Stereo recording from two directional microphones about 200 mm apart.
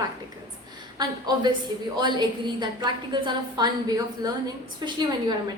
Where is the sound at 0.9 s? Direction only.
20° right (ahead or behind).